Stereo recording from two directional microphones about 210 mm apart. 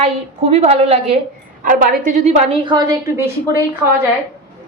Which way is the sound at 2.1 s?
30° right (ahead or behind).